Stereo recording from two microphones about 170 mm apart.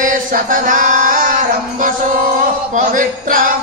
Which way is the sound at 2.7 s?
50° right (ahead or behind).